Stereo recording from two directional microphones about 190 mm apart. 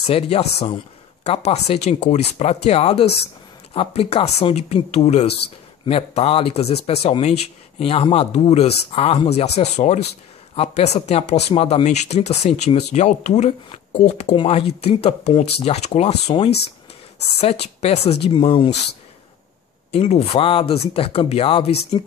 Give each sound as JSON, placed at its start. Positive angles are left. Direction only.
{"t": 0.0, "sound": "speech", "side_deg": 30}
{"t": 19.9, "sound": "speech", "side_deg": 35}